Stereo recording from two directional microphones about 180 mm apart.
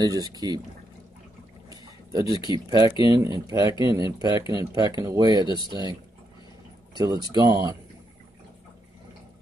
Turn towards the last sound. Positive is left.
turn(degrees=-20)  # may be behind; listen again after turning